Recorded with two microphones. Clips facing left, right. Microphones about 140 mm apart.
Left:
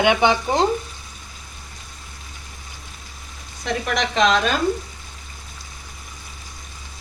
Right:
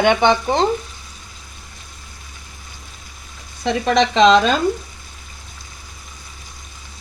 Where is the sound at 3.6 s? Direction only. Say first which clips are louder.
Right 7 dB; 25° right (ahead or behind).